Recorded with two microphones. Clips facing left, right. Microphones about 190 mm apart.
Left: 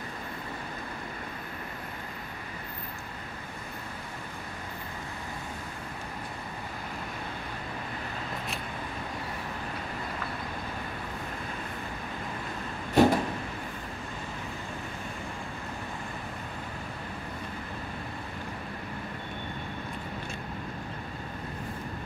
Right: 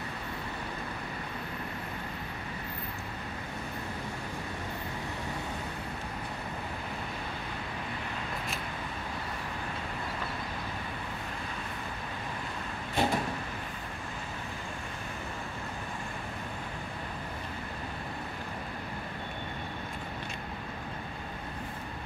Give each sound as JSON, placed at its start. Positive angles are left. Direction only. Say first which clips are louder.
{"t": 13.0, "sound": "vehicle", "louder": "left 9 dB", "side_deg": 45}